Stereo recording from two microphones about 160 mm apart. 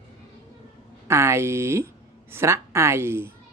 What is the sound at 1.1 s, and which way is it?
Speech, 15° right (ahead or behind).